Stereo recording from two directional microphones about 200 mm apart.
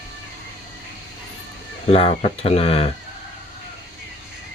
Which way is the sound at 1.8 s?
30° left (ahead or behind).